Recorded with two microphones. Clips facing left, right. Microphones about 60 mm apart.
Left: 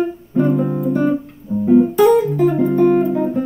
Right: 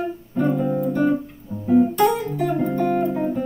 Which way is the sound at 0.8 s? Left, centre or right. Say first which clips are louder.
Left 3 dB; centre.